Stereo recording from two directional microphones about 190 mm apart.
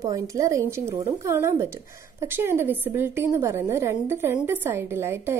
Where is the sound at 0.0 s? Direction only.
15° right (ahead or behind).